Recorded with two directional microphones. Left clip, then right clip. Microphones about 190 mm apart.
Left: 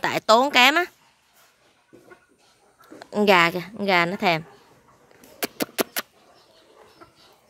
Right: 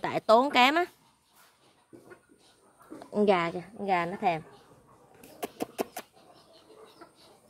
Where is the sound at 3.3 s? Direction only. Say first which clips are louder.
Left 11 dB; 20° left (ahead or behind).